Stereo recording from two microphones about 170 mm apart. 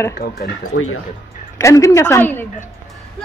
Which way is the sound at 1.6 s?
20° left (ahead or behind).